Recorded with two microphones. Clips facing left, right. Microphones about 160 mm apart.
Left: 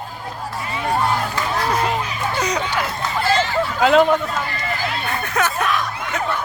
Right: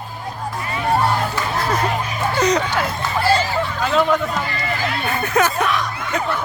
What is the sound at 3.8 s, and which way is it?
Speech, 75° left (ahead or behind).